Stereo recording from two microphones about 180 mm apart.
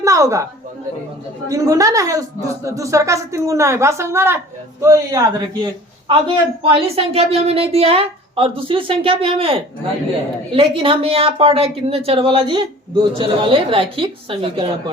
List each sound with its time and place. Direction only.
0.0 s a sound: 15° right (ahead or behind)
1.5 s a man's voice: 20° right (ahead or behind)
6.1 s speech: 30° right (ahead or behind)